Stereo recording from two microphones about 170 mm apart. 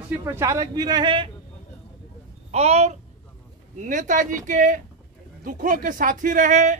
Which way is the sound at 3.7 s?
50° right (ahead or behind).